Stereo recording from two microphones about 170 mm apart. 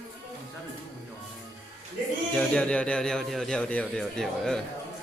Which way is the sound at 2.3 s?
5° left (ahead or behind).